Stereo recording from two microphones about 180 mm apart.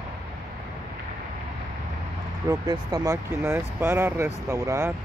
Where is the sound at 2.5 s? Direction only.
20° right (ahead or behind).